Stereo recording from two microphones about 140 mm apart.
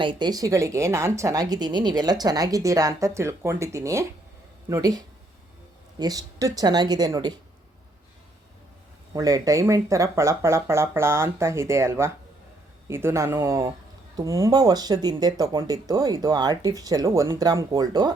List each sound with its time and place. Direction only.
0.0 s speech: 35° right (ahead or behind)
9.1 s speech: 25° right (ahead or behind)